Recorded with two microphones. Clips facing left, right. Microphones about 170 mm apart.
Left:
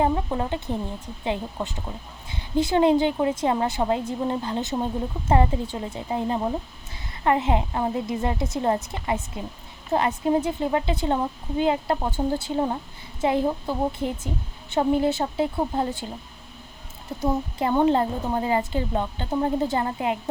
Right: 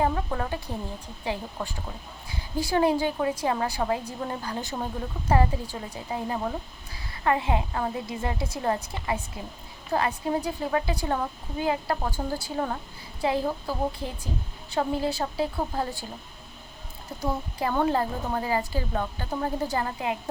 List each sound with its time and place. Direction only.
0.0 s a woman's voice: 20° left (ahead or behind)
17.2 s a woman's voice: 25° left (ahead or behind)